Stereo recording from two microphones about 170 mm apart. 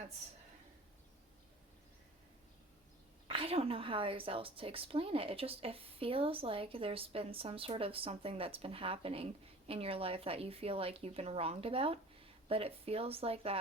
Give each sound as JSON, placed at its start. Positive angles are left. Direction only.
{"t": 3.2, "sound": "a woman's voice", "side_deg": -35}